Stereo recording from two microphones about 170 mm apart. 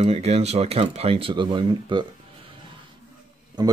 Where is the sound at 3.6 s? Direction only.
25° right (ahead or behind).